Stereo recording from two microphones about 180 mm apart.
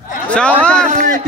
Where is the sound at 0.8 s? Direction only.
45° right (ahead or behind).